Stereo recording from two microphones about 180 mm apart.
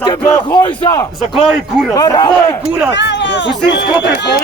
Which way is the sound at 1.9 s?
20° left (ahead or behind).